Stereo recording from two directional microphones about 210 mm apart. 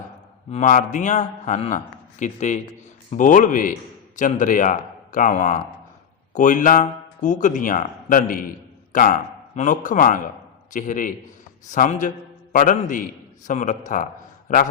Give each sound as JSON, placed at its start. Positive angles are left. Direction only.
{"t": 0.5, "sound": "a man's voice", "side_deg": 35}